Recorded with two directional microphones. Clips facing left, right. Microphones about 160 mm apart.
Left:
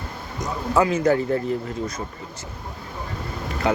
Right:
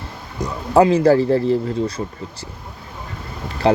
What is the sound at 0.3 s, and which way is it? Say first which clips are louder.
Speech: right 6 dB; 35° right (ahead or behind).